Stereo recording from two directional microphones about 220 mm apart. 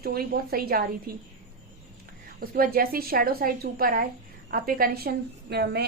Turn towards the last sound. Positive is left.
turn(degrees=-45)  # may be behind; listen again after turning